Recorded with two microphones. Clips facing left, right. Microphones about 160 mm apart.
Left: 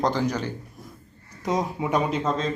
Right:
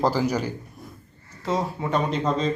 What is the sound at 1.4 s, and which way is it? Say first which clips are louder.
Speech: even; 15° left (ahead or behind).